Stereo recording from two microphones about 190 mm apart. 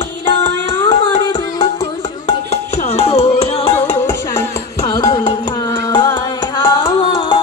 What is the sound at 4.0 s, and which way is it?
Music, 15° left (ahead or behind).